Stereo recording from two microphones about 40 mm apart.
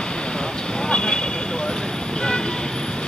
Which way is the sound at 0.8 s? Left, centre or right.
Left.